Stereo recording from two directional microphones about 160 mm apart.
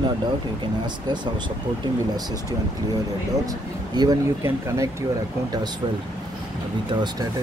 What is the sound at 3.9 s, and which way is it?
Speech, 20° right (ahead or behind).